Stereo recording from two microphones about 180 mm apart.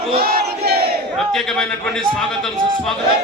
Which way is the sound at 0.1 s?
55° right (ahead or behind).